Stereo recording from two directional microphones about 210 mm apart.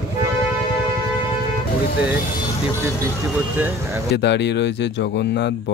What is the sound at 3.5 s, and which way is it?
Speech, 10° right (ahead or behind).